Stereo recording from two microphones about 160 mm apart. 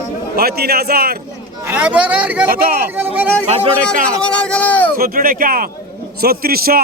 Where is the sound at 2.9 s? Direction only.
15° right (ahead or behind).